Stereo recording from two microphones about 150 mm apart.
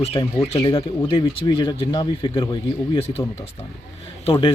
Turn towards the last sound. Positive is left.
turn(degrees=35)  # may be behind; listen again after turning